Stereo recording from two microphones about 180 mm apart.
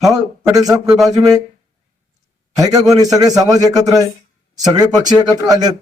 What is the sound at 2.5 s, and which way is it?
A man's voice, 20° right (ahead or behind).